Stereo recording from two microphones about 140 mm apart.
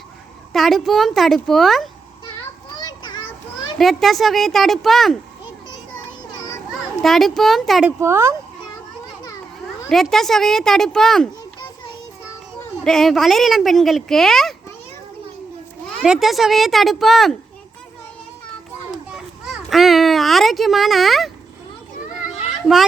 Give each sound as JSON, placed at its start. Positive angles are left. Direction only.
{"t": 0.5, "sound": "speech", "side_deg": 0}
{"t": 2.8, "sound": "children playing", "side_deg": 30}
{"t": 3.8, "sound": "speech", "side_deg": 0}
{"t": 7.0, "sound": "speech", "side_deg": 0}
{"t": 7.9, "sound": "speech", "side_deg": -20}
{"t": 9.9, "sound": "speech", "side_deg": 0}
{"t": 12.8, "sound": "speech", "side_deg": 0}
{"t": 16.0, "sound": "speech", "side_deg": 0}
{"t": 19.1, "sound": "a child's voice", "side_deg": 0}
{"t": 22.6, "sound": "speech", "side_deg": 0}